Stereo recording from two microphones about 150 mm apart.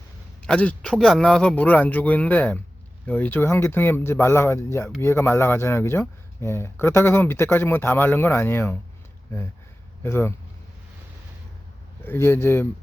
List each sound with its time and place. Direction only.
0.4 s speech: 10° left (ahead or behind)
10.0 s speech: 15° left (ahead or behind)
12.0 s speech: 15° left (ahead or behind)